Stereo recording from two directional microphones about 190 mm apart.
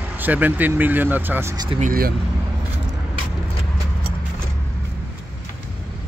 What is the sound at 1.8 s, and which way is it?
Speech, 50° right (ahead or behind).